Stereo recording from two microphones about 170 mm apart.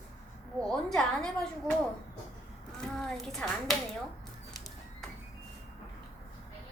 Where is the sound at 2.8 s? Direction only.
5° left (ahead or behind).